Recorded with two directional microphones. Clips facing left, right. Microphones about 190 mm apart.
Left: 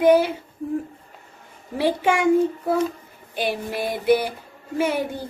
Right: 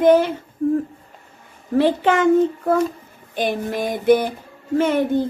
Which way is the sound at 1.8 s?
10° left (ahead or behind).